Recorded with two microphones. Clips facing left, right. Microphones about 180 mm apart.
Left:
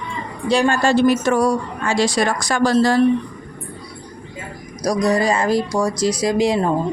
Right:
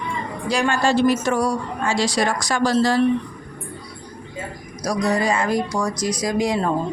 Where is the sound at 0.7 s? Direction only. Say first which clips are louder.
Left 1 dB; 55° left (ahead or behind).